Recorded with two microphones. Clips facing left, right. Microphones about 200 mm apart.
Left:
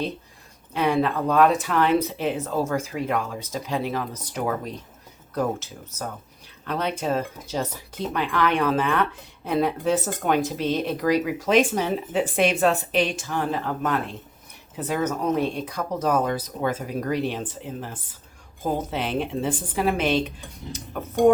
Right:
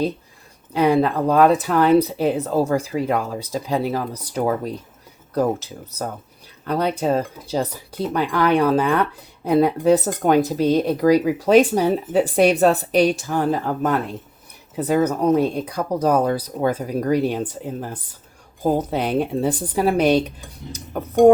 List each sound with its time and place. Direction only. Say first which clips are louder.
0.7 s speech: right 5 dB; 35° right (ahead or behind)